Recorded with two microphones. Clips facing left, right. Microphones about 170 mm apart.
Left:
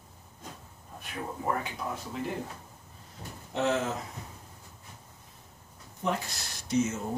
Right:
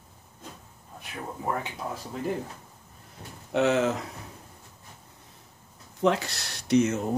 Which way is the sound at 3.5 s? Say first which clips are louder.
Right 5 dB; 70° right (ahead or behind).